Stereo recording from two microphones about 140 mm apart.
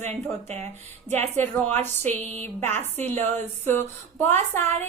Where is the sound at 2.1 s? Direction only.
55° right (ahead or behind).